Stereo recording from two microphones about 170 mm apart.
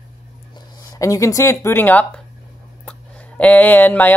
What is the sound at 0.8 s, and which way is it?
Speech, 20° left (ahead or behind).